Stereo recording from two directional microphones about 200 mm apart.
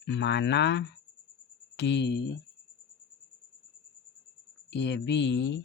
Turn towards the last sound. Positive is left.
turn(degrees=60)  # may be behind; listen again after turning